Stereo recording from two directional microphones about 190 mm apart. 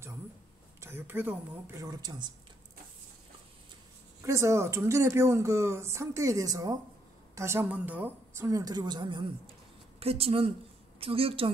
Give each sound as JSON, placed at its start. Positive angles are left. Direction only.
{"t": 0.7, "sound": "speech", "side_deg": -10}
{"t": 4.2, "sound": "a woman's voice", "side_deg": -15}